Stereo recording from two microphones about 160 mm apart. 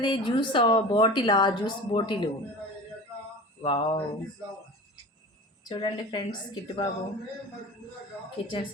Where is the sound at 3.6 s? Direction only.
30° left (ahead or behind).